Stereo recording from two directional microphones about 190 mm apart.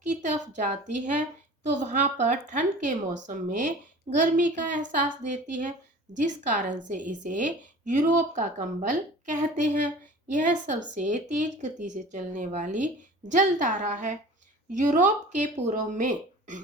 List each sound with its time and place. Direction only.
0.1 s a woman's voice: 40° right (ahead or behind)
6.1 s speech: 40° right (ahead or behind)